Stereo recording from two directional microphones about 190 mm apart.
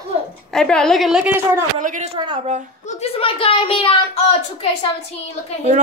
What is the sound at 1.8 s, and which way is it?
Speech, 45° right (ahead or behind).